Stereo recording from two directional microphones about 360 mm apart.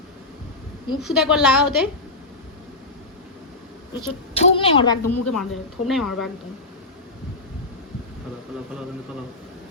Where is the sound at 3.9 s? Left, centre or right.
Centre.